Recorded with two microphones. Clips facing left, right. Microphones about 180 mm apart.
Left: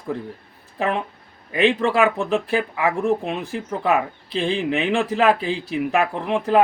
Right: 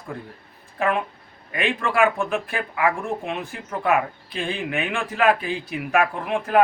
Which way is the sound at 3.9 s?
30° left (ahead or behind).